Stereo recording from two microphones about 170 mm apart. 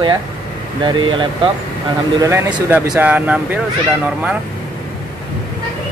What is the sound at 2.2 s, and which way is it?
Speech, 10° right (ahead or behind).